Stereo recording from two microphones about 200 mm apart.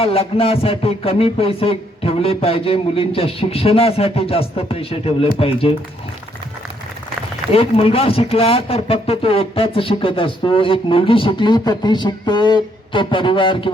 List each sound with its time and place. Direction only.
0.0 s speech: 30° left (ahead or behind)
7.5 s speech: 30° left (ahead or behind)